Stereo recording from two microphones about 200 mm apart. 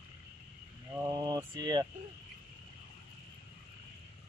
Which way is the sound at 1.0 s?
20° right (ahead or behind).